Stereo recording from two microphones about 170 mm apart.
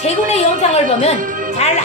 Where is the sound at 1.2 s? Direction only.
50° right (ahead or behind).